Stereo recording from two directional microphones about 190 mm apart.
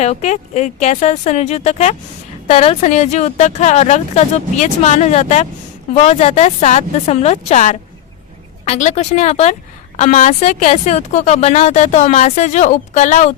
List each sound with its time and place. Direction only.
0.0 s speech: 35° left (ahead or behind)